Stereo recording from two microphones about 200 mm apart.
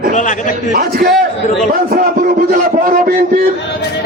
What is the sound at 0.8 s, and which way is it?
A man's voice, 50° right (ahead or behind).